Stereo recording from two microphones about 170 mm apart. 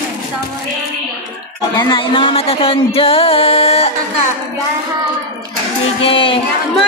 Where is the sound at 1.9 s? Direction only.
30° left (ahead or behind).